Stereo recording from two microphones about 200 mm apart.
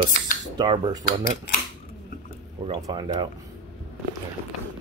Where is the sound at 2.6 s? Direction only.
25° right (ahead or behind).